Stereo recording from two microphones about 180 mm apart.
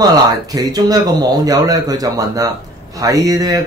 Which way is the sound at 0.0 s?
20° right (ahead or behind).